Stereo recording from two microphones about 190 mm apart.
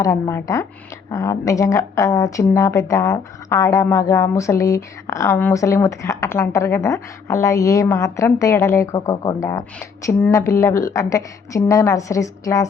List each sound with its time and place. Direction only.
0.0 s speech: 15° left (ahead or behind)